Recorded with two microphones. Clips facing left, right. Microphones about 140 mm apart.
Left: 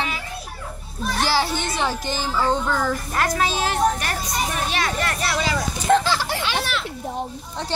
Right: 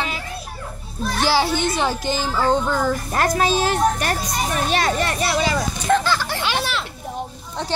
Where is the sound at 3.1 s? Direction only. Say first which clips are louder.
Right 3 dB; 35° right (ahead or behind).